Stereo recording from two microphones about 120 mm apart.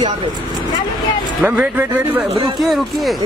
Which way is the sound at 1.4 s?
15° right (ahead or behind).